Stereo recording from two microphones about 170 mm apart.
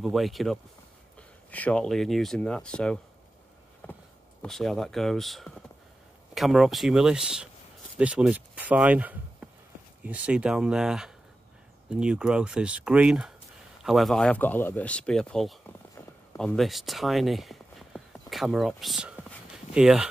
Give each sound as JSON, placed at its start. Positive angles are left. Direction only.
{"t": 0.0, "sound": "speech", "side_deg": 0}
{"t": 3.8, "sound": "a sound", "side_deg": 10}
{"t": 4.4, "sound": "speech", "side_deg": 0}